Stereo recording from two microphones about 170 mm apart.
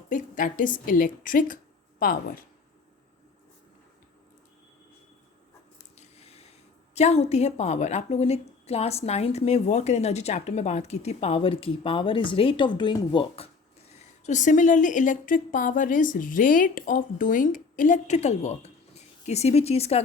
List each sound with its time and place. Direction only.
0.1 s a woman's voice: 50° left (ahead or behind)
6.0 s a sound: 40° left (ahead or behind)
6.9 s a woman's voice: 40° left (ahead or behind)
13.9 s a woman's voice: 45° left (ahead or behind)